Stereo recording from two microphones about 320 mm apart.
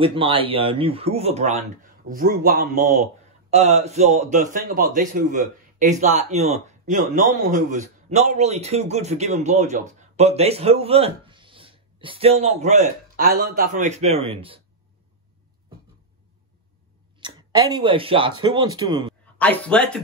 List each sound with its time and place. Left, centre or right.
0.0 s speech: centre
17.2 s speech: centre
19.3 s speech: centre